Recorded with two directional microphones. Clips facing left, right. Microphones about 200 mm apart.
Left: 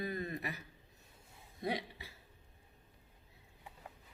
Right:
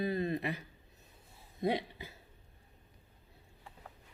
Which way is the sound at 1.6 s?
25° right (ahead or behind).